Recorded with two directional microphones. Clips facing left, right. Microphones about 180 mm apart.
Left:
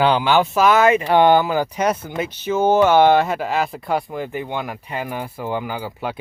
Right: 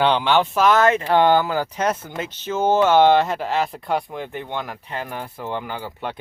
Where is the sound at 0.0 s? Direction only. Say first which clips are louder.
Left 2 dB; 5° left (ahead or behind).